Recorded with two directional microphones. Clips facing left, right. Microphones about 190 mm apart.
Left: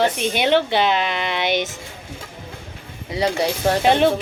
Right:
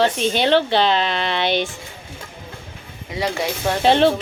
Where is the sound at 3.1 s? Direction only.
25° left (ahead or behind).